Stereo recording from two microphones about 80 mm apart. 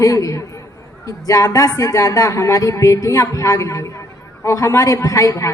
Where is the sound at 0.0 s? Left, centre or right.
Left.